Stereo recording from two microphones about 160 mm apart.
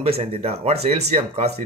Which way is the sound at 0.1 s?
40° right (ahead or behind).